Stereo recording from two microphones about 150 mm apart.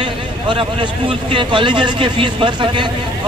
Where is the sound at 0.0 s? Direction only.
35° right (ahead or behind).